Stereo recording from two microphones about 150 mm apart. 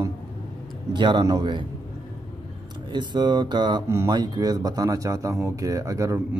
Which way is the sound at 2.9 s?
30° right (ahead or behind).